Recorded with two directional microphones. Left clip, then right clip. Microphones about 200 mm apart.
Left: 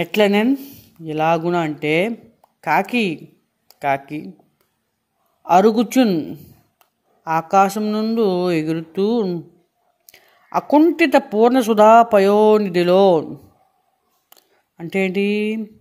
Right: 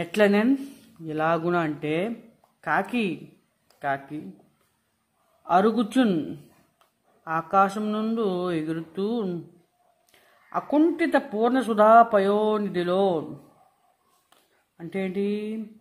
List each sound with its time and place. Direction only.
0.0 s speech: 20° left (ahead or behind)
5.4 s speech: 25° left (ahead or behind)
10.5 s speech: 25° left (ahead or behind)
14.3 s speech: 25° left (ahead or behind)